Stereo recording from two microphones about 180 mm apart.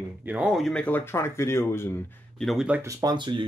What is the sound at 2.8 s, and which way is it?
Speech, 25° right (ahead or behind).